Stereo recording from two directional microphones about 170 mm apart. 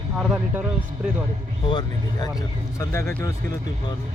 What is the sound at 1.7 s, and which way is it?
Speech, 25° left (ahead or behind).